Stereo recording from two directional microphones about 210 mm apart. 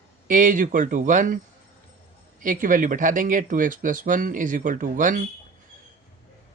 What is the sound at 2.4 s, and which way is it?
Speech, 40° right (ahead or behind).